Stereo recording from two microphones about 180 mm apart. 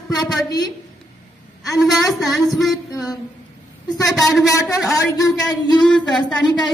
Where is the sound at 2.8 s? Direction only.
20° left (ahead or behind).